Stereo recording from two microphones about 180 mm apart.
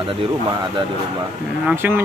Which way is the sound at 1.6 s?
10° right (ahead or behind).